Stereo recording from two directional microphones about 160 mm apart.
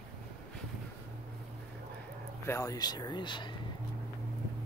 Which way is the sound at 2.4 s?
20° left (ahead or behind).